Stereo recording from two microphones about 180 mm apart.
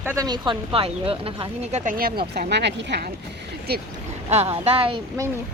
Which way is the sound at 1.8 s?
50° right (ahead or behind).